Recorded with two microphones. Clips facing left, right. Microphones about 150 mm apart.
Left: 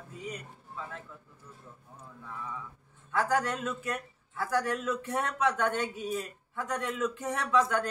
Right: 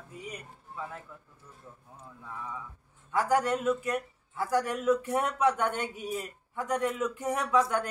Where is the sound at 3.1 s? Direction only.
15° right (ahead or behind).